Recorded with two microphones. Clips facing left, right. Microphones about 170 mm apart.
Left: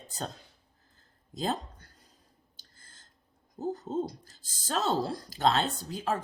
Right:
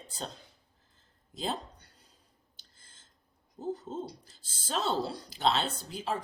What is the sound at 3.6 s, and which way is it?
Speech, 40° left (ahead or behind).